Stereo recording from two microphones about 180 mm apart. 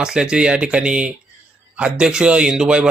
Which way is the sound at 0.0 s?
5° right (ahead or behind).